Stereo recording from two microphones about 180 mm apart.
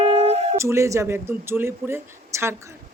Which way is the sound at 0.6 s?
15° right (ahead or behind).